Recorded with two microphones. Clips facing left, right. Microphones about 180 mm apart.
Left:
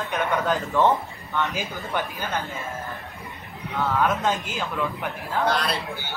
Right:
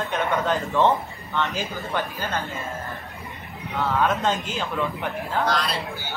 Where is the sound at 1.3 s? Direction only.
15° left (ahead or behind).